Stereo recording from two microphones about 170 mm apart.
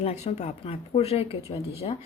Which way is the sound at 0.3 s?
40° left (ahead or behind).